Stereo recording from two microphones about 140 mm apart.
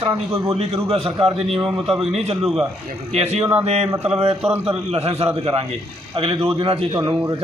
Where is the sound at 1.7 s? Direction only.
5° right (ahead or behind).